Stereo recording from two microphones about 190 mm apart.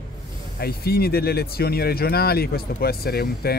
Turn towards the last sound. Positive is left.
turn(degrees=55)  # may be behind; listen again after turning